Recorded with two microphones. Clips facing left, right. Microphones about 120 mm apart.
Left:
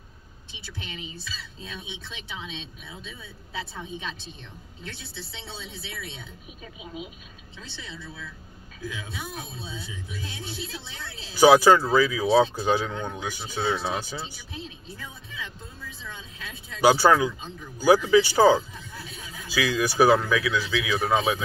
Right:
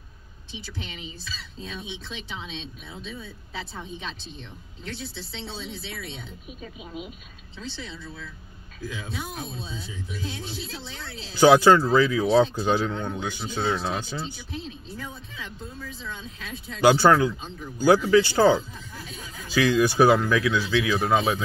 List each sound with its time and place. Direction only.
11.3 s speech: 10° left (ahead or behind)
16.8 s speech: 10° left (ahead or behind)